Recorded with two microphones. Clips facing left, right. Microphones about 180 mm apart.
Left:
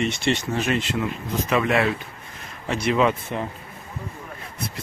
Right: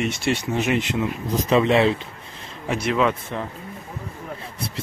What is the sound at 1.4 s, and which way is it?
Speech, 30° right (ahead or behind).